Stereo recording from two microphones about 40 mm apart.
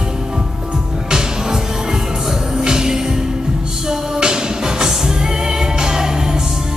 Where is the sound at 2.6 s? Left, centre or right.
Centre.